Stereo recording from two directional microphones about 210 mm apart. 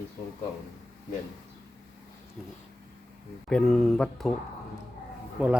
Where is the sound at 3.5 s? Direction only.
5° left (ahead or behind).